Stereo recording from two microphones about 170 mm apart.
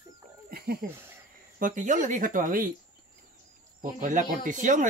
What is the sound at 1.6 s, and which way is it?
Speech, 50° right (ahead or behind).